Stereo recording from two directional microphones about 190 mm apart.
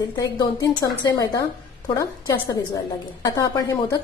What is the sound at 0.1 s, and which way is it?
A woman's voice, 20° left (ahead or behind).